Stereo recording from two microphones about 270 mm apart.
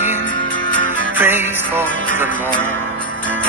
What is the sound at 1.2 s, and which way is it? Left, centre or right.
Music, centre.